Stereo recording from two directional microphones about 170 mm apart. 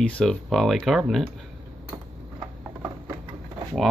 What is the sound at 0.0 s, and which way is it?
Speech, 5° left (ahead or behind).